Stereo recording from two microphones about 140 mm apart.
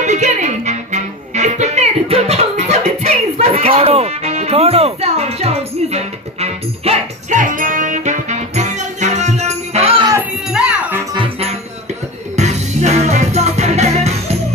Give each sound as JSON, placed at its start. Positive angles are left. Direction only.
{"t": 0.0, "sound": "music", "side_deg": -55}
{"t": 7.3, "sound": "music", "side_deg": -70}
{"t": 10.5, "sound": "music", "side_deg": -5}
{"t": 12.4, "sound": "music", "side_deg": -55}